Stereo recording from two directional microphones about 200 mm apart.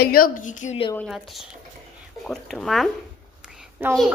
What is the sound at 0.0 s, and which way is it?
Speech, 45° left (ahead or behind).